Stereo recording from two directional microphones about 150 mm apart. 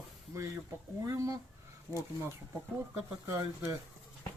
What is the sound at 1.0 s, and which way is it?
Speech, 20° right (ahead or behind).